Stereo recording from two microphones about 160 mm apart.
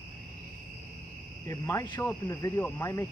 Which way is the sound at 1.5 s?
20° left (ahead or behind).